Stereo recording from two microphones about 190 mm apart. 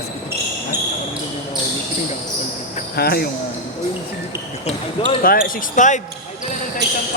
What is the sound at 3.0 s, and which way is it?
Speech, 55° left (ahead or behind).